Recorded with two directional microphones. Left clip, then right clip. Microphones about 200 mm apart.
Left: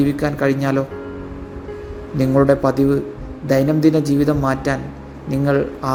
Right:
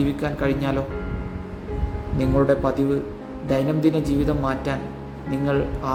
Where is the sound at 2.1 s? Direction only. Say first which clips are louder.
Left 5 dB; 20° left (ahead or behind).